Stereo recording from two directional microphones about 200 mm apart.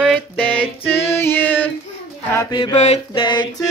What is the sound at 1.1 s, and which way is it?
Female singing, 10° left (ahead or behind).